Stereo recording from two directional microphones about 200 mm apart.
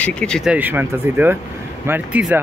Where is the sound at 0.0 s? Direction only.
5° left (ahead or behind).